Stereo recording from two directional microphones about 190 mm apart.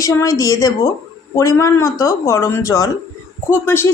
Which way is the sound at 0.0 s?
15° left (ahead or behind).